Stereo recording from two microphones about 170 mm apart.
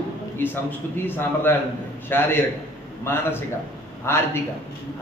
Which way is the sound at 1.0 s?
10° left (ahead or behind).